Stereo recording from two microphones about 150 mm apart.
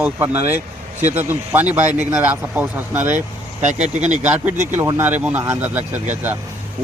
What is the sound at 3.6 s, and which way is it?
Speech, 50° right (ahead or behind).